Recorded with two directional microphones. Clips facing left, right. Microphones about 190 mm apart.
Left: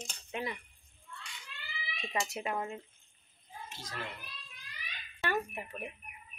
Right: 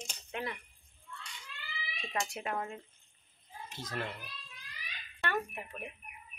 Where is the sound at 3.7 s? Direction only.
55° right (ahead or behind).